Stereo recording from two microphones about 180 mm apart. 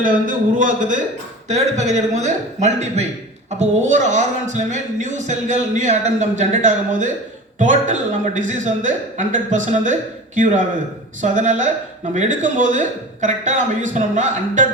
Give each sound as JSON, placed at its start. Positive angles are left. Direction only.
{"t": 0.0, "sound": "speech", "side_deg": -50}